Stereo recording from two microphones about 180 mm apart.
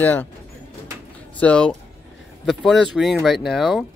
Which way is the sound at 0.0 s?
10° left (ahead or behind).